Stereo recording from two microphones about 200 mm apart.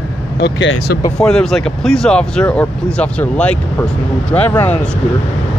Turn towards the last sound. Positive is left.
turn(degrees=10)  # may be behind; listen again after turning